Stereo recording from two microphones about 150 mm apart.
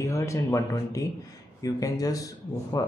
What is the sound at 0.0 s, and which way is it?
Speech, 20° left (ahead or behind).